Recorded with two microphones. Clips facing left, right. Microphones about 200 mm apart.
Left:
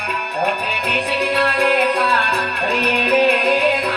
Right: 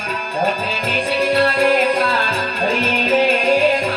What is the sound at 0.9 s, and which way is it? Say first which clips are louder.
Music: right 3 dB; 35° right (ahead or behind).